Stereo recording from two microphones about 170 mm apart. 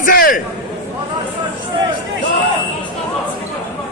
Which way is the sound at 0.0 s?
55° left (ahead or behind).